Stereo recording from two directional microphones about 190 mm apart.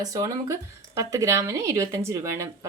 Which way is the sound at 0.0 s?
20° right (ahead or behind).